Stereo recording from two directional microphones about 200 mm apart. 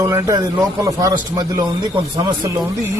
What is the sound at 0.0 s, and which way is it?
A man's voice, 15° right (ahead or behind).